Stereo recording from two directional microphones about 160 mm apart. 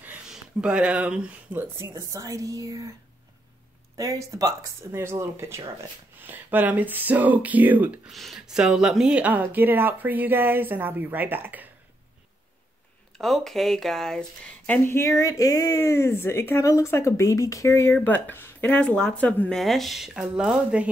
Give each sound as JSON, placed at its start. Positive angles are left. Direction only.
{"t": 0.0, "sound": "speech", "side_deg": -10}
{"t": 3.9, "sound": "speech", "side_deg": -20}
{"t": 13.2, "sound": "speech", "side_deg": 0}